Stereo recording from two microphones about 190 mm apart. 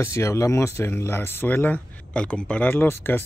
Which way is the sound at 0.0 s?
15° left (ahead or behind).